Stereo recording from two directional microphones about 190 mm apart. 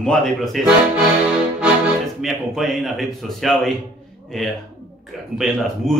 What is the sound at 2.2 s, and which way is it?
Speech, centre (ahead or behind).